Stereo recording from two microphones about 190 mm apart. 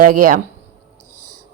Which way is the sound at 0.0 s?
45° right (ahead or behind).